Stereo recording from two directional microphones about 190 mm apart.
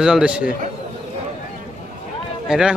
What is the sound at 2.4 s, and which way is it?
Speech, 5° right (ahead or behind).